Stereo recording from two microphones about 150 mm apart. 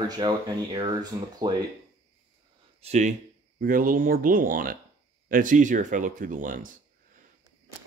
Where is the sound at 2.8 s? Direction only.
50° right (ahead or behind).